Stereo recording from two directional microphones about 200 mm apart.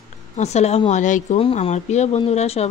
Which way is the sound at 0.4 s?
35° left (ahead or behind).